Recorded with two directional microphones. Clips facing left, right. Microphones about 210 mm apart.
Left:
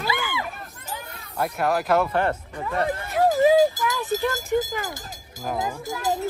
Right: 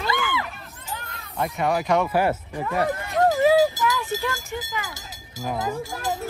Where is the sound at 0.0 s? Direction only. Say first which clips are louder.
Right 2 dB; 10° left (ahead or behind).